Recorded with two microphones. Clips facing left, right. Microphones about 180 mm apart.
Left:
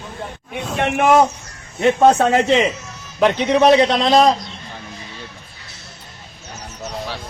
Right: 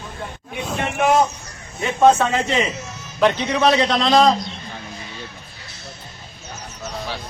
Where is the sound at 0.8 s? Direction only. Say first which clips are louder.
Left 4 dB; 60° left (ahead or behind).